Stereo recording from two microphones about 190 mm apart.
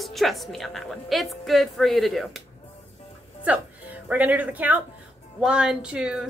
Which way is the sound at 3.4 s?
10° right (ahead or behind).